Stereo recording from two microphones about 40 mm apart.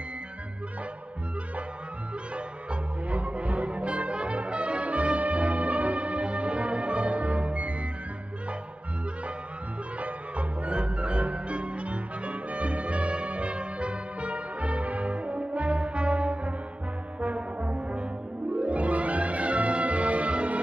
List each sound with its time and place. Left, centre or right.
2.3 s music: right
9.9 s music: right
17.2 s brass instrument: right
18.6 s music: right